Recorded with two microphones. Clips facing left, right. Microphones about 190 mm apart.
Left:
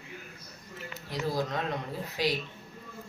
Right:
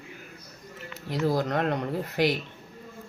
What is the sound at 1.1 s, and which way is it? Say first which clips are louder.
Speech: right 6 dB; 55° right (ahead or behind).